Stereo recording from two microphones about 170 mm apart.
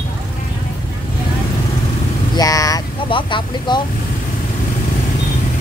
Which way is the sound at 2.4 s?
20° left (ahead or behind).